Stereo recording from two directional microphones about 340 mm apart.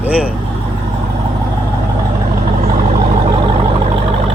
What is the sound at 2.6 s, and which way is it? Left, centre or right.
Vehicle, centre.